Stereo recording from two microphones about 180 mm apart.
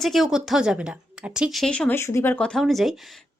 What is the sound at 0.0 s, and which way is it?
A woman's voice, centre (ahead or behind).